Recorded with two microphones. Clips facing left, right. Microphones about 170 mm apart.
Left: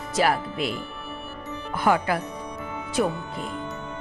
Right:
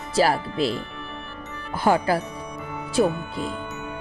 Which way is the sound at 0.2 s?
30° right (ahead or behind).